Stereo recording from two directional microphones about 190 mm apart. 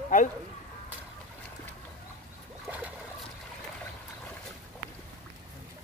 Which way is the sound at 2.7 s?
10° right (ahead or behind).